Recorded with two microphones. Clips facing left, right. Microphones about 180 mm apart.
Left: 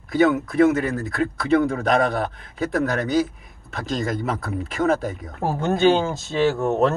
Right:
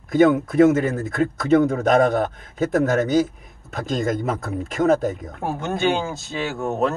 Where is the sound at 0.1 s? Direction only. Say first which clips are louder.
Right 3 dB; 45° right (ahead or behind).